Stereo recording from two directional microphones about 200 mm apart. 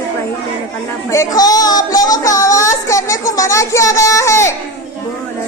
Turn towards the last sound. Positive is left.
turn(degrees=15)  # may be behind; listen again after turning